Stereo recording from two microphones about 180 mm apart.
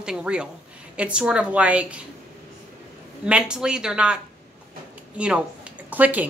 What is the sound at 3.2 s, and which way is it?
Speech, 5° right (ahead or behind).